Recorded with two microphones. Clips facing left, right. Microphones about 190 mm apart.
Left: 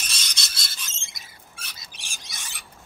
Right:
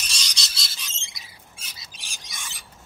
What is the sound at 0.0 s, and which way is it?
Bird, 55° left (ahead or behind).